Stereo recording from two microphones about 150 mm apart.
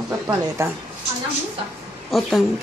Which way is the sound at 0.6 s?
15° right (ahead or behind).